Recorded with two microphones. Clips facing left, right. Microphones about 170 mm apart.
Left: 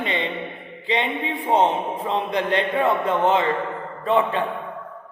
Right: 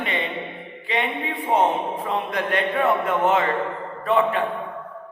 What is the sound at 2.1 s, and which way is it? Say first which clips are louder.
A man's voice: left 3 dB; 25° left (ahead or behind).